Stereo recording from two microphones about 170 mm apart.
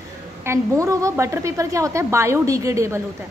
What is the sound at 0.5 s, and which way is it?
A woman's voice, 15° right (ahead or behind).